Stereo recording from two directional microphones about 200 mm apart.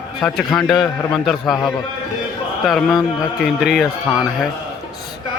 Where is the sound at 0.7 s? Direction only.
20° left (ahead or behind).